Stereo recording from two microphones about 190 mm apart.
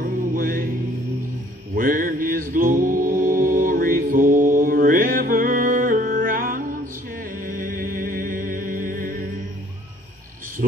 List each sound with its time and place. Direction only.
0.0 s music: 50° right (ahead or behind)
1.8 s music: 45° right (ahead or behind)